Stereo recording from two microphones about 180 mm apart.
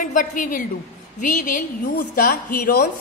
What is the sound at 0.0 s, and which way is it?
A woman's voice, 45° left (ahead or behind).